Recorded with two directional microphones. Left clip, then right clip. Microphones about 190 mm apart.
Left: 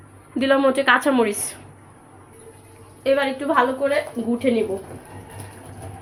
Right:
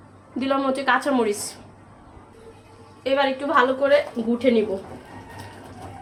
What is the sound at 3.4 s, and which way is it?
Speech, 10° left (ahead or behind).